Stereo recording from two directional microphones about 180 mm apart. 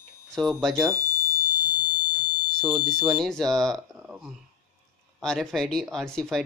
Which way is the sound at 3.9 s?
5° right (ahead or behind).